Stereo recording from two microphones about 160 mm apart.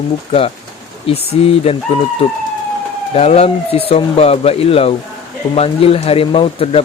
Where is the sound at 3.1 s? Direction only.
40° left (ahead or behind).